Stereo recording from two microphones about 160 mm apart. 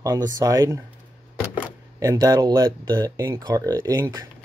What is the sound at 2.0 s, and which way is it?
Speech, 25° right (ahead or behind).